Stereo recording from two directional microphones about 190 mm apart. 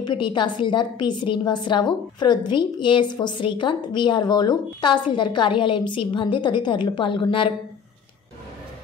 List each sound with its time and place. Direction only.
0.0 s a woman's voice: 25° left (ahead or behind)